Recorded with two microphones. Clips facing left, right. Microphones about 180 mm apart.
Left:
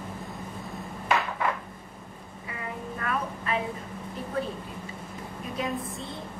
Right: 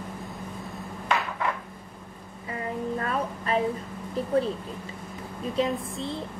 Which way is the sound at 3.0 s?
35° right (ahead or behind).